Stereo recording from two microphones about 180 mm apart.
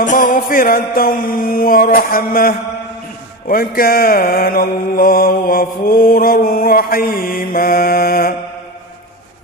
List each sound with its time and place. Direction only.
0.0 s mantra: 45° left (ahead or behind)